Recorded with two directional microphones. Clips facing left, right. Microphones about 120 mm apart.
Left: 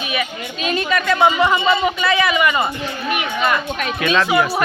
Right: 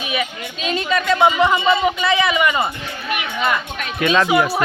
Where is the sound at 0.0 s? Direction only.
20° right (ahead or behind).